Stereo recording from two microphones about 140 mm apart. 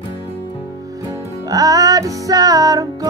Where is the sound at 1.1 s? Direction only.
25° right (ahead or behind).